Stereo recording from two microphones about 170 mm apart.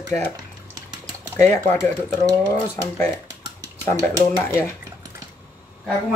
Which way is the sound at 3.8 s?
15° left (ahead or behind).